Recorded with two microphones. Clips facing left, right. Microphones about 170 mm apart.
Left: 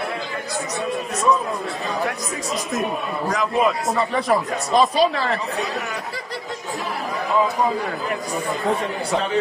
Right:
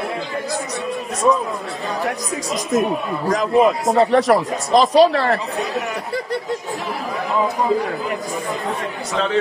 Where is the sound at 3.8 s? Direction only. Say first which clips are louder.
Right 6 dB; 85° right; by 5.3 s 70° right (ahead or behind).